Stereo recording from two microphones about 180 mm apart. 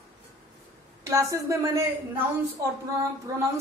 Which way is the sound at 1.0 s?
15° right (ahead or behind).